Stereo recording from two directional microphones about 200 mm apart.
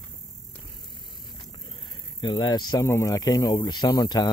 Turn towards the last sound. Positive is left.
turn(degrees=20)  # may be behind; listen again after turning